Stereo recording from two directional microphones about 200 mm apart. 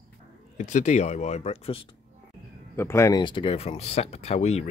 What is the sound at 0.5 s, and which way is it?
Speech, 35° left (ahead or behind).